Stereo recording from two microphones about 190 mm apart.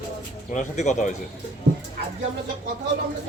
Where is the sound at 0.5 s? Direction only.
40° left (ahead or behind).